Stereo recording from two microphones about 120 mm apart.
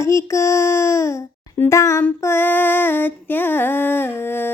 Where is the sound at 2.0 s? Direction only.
20° left (ahead or behind).